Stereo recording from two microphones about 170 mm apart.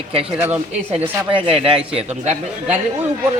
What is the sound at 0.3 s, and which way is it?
Speech, 15° right (ahead or behind).